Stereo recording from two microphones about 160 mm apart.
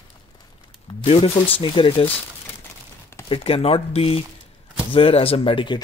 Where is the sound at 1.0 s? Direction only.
35° left (ahead or behind).